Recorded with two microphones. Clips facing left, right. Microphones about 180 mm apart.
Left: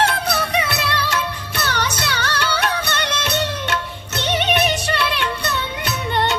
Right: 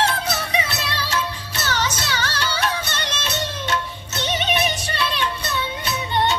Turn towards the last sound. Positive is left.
turn(degrees=60)  # may be behind; listen again after turning